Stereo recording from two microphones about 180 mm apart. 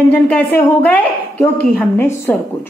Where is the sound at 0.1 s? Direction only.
10° left (ahead or behind).